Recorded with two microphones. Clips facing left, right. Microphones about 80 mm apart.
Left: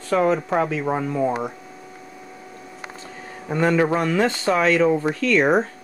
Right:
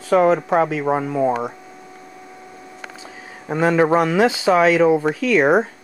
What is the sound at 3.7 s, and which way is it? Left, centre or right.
Speech, right.